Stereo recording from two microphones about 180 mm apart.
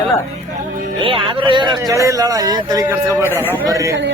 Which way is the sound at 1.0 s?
30° right (ahead or behind).